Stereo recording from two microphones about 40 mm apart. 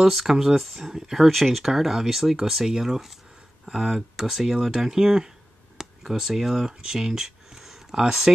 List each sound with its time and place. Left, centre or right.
0.0 s speech: centre